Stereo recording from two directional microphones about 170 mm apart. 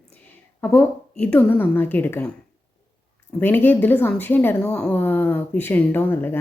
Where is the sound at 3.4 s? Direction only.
10° left (ahead or behind).